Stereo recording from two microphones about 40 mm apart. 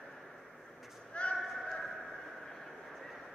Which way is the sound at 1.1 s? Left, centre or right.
Left.